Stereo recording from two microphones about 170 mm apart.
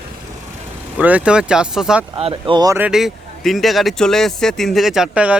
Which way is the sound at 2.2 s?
35° right (ahead or behind).